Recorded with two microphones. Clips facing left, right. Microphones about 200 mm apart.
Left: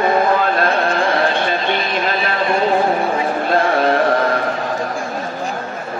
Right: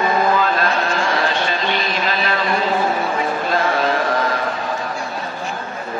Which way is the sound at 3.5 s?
55° left (ahead or behind).